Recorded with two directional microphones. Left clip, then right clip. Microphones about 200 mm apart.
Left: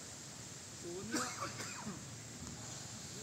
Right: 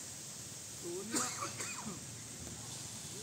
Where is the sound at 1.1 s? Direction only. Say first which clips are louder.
Right 1 dB; 50° left (ahead or behind).